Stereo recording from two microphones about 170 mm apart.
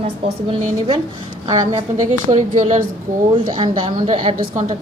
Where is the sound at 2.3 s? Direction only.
45° right (ahead or behind).